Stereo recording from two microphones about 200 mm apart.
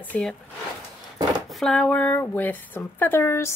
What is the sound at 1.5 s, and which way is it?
Speech, centre (ahead or behind).